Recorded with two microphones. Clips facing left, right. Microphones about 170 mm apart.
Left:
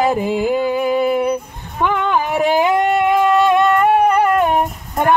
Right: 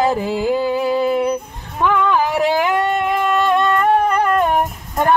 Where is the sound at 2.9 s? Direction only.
10° left (ahead or behind).